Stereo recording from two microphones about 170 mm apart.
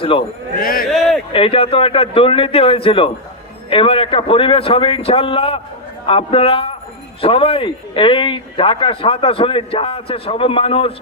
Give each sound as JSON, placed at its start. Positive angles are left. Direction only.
{"t": 0.0, "sound": "a man's voice", "side_deg": 30}
{"t": 0.6, "sound": "a man's voice", "side_deg": 55}
{"t": 0.9, "sound": "a sound", "side_deg": 0}
{"t": 1.3, "sound": "a man's voice", "side_deg": 30}